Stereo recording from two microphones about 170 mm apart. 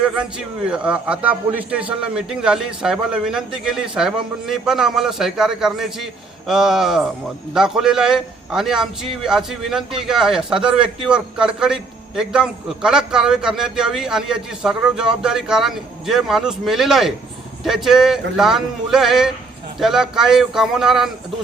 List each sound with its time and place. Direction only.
0.0 s a man's voice: 5° right (ahead or behind)